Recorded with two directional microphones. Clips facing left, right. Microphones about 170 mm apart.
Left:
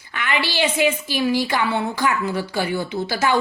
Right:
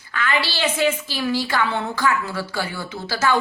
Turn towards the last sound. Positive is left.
turn(degrees=15)  # may be behind; listen again after turning